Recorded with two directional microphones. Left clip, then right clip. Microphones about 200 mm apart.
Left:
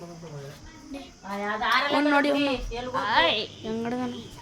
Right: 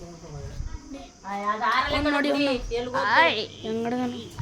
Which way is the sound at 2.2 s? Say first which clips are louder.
Even; centre (ahead or behind).